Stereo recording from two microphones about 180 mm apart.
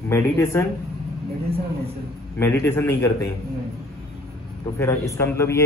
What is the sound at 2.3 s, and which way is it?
Speech, 15° left (ahead or behind).